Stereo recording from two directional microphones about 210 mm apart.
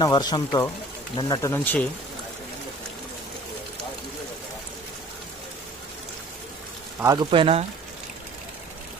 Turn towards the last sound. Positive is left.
turn(degrees=-25)  # may be behind; listen again after turning